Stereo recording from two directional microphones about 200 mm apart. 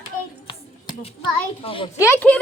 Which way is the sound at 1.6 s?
25° left (ahead or behind).